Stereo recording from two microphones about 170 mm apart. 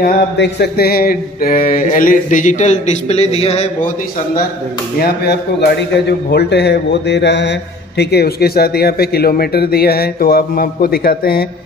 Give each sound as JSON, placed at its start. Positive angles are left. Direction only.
{"t": 0.0, "sound": "a sound", "side_deg": 70}
{"t": 4.9, "sound": "speech", "side_deg": 70}
{"t": 8.0, "sound": "speech", "side_deg": 70}